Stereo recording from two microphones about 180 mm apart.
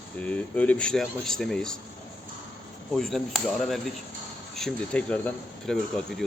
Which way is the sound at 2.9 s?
Centre (ahead or behind).